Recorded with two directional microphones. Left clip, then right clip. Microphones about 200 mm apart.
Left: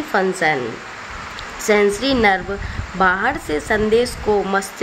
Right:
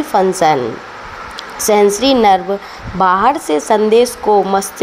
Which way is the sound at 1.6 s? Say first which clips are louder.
Right 5 dB; 10° right (ahead or behind).